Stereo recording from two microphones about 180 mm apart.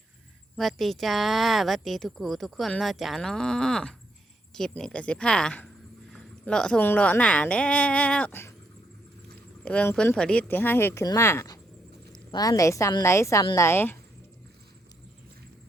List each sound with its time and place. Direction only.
0.5 s speech: centre (ahead or behind)
9.6 s speech: 5° left (ahead or behind)